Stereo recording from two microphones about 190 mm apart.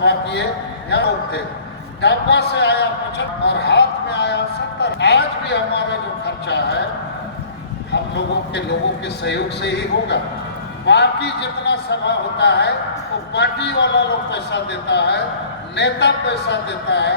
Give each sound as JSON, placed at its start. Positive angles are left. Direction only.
{"t": 0.0, "sound": "speech", "side_deg": 60}
{"t": 7.9, "sound": "speech", "side_deg": 65}